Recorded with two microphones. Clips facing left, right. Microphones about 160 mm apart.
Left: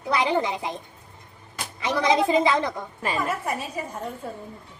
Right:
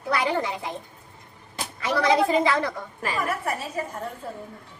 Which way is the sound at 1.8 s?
20° left (ahead or behind).